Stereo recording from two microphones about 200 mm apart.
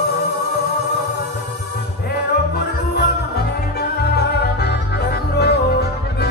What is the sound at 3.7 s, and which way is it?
Music, 55° left (ahead or behind).